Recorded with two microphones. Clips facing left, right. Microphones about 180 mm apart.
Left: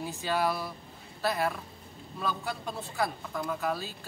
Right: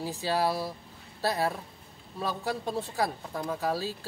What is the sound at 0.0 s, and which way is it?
Speech, 35° right (ahead or behind).